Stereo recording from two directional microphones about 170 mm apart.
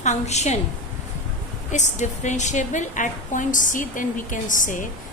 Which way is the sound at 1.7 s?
45° left (ahead or behind).